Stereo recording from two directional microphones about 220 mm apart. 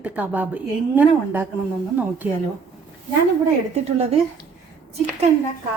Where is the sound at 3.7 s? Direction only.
30° right (ahead or behind).